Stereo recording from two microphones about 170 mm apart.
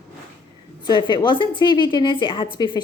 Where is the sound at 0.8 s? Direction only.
25° left (ahead or behind).